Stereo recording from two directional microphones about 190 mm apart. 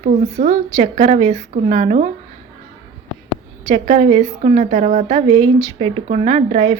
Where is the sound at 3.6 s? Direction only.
40° right (ahead or behind).